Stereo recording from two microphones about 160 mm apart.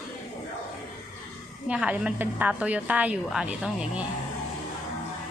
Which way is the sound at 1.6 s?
10° right (ahead or behind).